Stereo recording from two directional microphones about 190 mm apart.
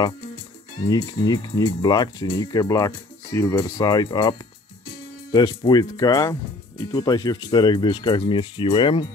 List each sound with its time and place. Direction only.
0.7 s speech: 20° left (ahead or behind)